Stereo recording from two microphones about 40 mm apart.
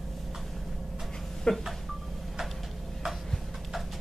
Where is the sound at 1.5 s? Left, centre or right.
Left.